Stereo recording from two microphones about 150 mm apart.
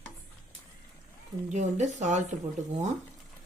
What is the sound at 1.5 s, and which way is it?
Speech, 50° right (ahead or behind).